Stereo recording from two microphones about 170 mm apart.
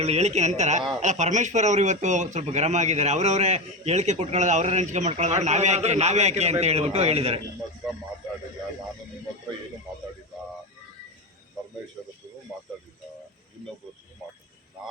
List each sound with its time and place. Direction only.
0.0 s a man's voice: 40° right (ahead or behind)